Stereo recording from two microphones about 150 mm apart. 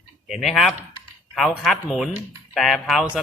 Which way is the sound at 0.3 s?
Centre (ahead or behind).